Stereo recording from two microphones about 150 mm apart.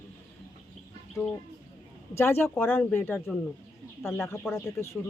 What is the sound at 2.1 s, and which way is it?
A man's voice, 15° left (ahead or behind).